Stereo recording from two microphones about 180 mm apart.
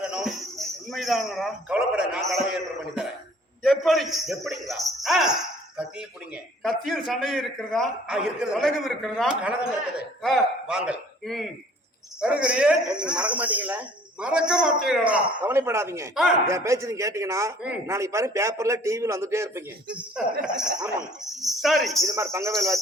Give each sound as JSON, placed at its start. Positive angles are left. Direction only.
{"t": 0.0, "sound": "a man's voice", "side_deg": -5}
{"t": 20.4, "sound": "a man's voice", "side_deg": -5}
{"t": 22.0, "sound": "speech", "side_deg": -15}